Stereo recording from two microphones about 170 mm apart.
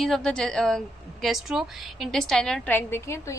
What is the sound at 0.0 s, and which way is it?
A woman's voice, centre (ahead or behind).